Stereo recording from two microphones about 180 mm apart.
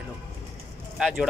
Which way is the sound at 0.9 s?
5° right (ahead or behind).